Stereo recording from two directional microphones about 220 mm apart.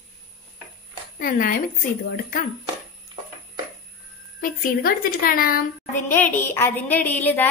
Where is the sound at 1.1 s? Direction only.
40° left (ahead or behind).